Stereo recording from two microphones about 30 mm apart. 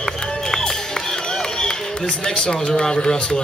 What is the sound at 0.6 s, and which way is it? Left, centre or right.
Run, left.